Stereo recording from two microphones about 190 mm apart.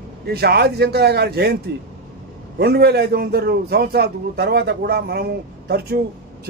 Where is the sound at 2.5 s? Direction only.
55° right (ahead or behind).